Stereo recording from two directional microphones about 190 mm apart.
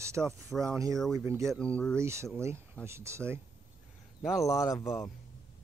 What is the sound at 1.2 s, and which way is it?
Speech, 15° right (ahead or behind).